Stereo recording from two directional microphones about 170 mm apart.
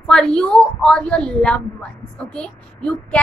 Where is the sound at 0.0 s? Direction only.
5° left (ahead or behind).